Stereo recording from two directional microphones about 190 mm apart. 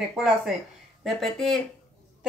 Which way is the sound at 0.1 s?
Centre (ahead or behind).